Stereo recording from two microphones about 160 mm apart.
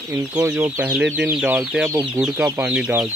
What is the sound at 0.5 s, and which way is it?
Speech, 15° right (ahead or behind).